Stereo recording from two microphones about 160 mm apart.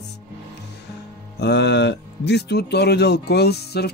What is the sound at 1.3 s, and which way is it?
Speech, 90° left.